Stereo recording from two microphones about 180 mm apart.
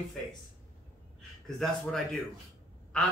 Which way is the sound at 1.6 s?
Centre (ahead or behind).